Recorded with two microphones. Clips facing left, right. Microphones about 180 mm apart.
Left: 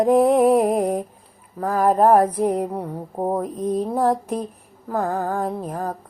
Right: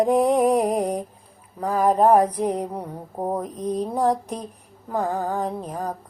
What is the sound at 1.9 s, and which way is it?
Female singing, 50° left (ahead or behind).